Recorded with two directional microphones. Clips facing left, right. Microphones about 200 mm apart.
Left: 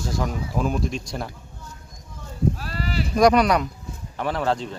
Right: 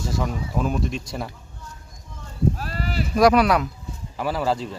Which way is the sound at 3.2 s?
5° right (ahead or behind).